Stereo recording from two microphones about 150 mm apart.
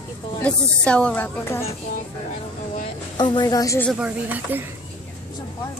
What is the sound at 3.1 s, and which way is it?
Speech, 30° left (ahead or behind).